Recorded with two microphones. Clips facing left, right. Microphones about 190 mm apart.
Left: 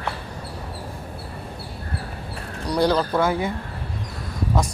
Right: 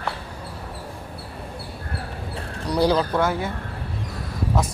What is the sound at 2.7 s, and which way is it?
Speech, 5° right (ahead or behind).